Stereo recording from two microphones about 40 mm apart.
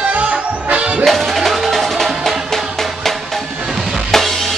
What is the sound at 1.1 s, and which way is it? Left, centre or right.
Music, centre.